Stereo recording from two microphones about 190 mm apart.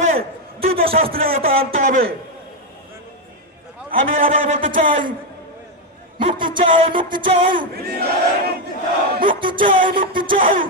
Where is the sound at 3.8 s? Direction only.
45° right (ahead or behind).